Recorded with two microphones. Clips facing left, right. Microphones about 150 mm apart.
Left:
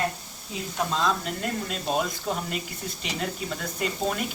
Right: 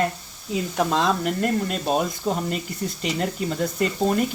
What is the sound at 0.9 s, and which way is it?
Speech, 65° right (ahead or behind).